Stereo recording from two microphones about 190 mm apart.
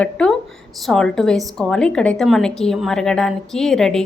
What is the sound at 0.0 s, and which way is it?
A woman's voice, 5° left (ahead or behind).